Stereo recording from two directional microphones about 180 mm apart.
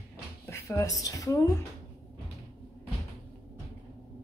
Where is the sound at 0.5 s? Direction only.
15° left (ahead or behind).